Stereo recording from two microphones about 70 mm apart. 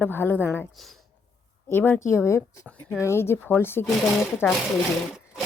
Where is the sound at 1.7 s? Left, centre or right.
Left.